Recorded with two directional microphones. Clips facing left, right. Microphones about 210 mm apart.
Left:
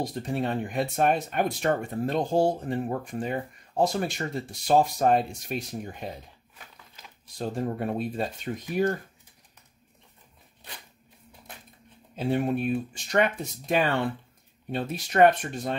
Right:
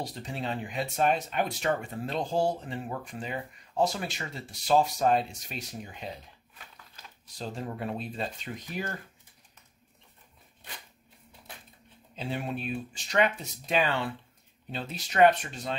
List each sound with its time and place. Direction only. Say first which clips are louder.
0.0 s speech: left 7 dB; 50° left (ahead or behind)
7.3 s speech: left 6 dB; 50° left (ahead or behind)
8.5 s speech: left 6 dB; 35° left (ahead or behind)
12.2 s speech: left 8 dB; 50° left (ahead or behind)